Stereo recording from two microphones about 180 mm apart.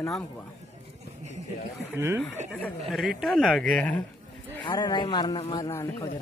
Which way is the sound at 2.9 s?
Centre (ahead or behind).